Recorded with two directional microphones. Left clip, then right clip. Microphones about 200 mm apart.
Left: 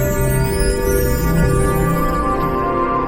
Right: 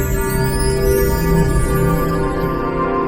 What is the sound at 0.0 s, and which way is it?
Music, centre (ahead or behind).